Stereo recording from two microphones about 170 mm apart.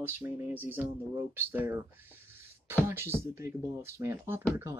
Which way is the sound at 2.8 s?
15° right (ahead or behind).